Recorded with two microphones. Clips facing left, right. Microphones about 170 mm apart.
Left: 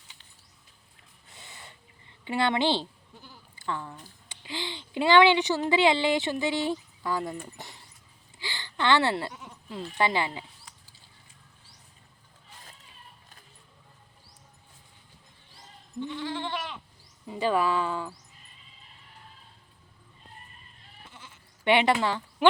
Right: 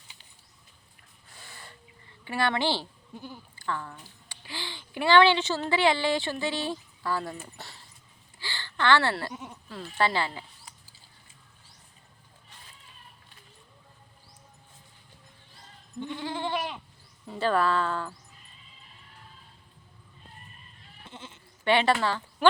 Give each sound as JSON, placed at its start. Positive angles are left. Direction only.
{"t": 1.3, "sound": "a sound", "side_deg": 20}
{"t": 2.2, "sound": "a woman's voice", "side_deg": 20}
{"t": 3.5, "sound": "a sound", "side_deg": 20}
{"t": 4.0, "sound": "a woman's voice", "side_deg": 20}
{"t": 7.4, "sound": "dog", "side_deg": 20}
{"t": 8.4, "sound": "a sound", "side_deg": 20}
{"t": 9.6, "sound": "a woman's voice", "side_deg": 15}
{"t": 16.0, "sound": "goat", "side_deg": -15}
{"t": 17.2, "sound": "speech", "side_deg": 15}
{"t": 21.1, "sound": "sheep", "side_deg": -25}
{"t": 21.6, "sound": "speech", "side_deg": 20}